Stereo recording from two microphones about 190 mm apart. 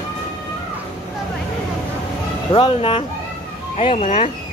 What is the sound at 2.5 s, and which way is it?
Speech, 30° left (ahead or behind).